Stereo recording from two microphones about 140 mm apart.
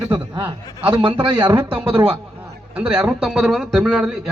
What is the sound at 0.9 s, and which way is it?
Speech, 40° right (ahead or behind).